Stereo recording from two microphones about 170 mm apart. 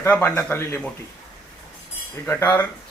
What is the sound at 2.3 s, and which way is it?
Speech, 15° left (ahead or behind).